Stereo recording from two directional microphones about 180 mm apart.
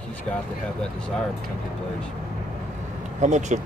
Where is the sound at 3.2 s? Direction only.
40° right (ahead or behind).